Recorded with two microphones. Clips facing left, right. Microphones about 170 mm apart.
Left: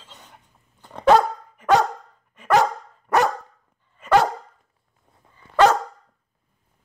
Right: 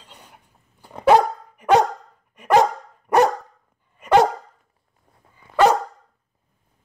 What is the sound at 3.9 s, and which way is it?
Dog, 15° right (ahead or behind).